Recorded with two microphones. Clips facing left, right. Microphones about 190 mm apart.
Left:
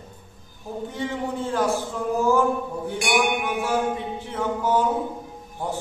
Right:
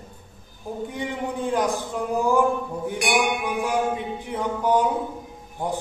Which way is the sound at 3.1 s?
15° right (ahead or behind).